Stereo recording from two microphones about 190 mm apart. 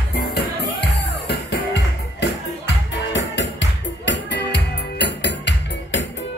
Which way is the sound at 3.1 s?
70° left (ahead or behind).